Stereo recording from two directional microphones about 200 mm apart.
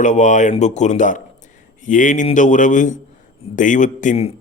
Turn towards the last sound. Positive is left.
turn(degrees=40)  # may be behind; listen again after turning